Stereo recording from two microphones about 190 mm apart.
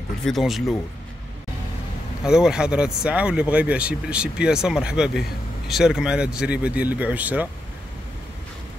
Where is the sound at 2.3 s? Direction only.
5° right (ahead or behind).